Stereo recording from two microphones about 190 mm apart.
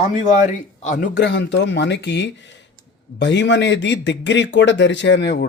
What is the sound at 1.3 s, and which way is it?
A man's voice, 65° left (ahead or behind).